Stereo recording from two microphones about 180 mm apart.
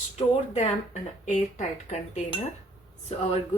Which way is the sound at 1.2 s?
40° left (ahead or behind).